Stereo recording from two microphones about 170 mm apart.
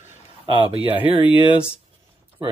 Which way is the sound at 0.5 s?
30° right (ahead or behind).